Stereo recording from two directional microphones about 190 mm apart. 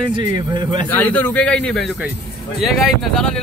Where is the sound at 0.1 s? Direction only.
25° right (ahead or behind).